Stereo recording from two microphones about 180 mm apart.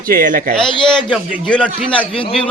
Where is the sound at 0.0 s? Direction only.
50° right (ahead or behind).